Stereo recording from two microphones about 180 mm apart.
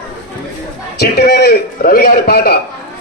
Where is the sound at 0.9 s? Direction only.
60° left (ahead or behind).